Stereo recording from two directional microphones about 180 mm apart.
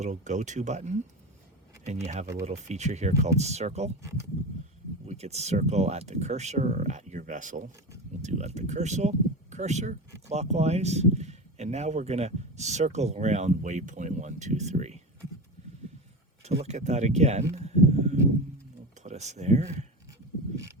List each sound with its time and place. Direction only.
0.0 s speech: 40° right (ahead or behind)
5.0 s speech: 35° right (ahead or behind)
16.6 s speech: 40° right (ahead or behind)
17.5 s a sound: 35° right (ahead or behind)
19.0 s speech: 40° right (ahead or behind)